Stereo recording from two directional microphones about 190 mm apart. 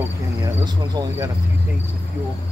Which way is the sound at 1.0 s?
20° right (ahead or behind).